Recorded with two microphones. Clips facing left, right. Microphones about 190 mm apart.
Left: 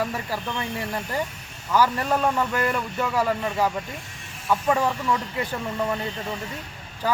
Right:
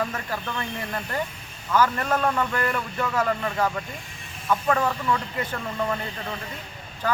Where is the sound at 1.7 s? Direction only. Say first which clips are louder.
Left 1 dB; 15° left (ahead or behind).